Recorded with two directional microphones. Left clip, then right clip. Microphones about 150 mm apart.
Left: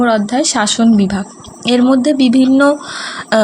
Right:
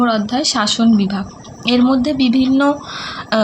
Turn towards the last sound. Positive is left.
turn(degrees=50)  # may be behind; listen again after turning